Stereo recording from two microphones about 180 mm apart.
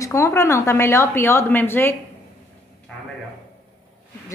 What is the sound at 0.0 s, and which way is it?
A woman's voice, 15° left (ahead or behind).